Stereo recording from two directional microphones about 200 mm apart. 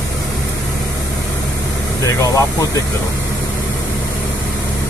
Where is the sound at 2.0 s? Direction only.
15° left (ahead or behind).